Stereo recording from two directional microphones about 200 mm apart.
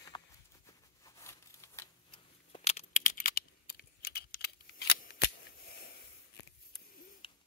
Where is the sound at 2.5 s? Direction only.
30° left (ahead or behind); by 5.9 s 50° left (ahead or behind).